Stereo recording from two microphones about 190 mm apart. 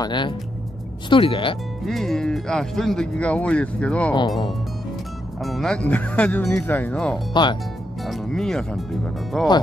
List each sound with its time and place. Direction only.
0.0 s speech: 25° left (ahead or behind)
1.9 s speech: centre (ahead or behind)
5.4 s speech: centre (ahead or behind)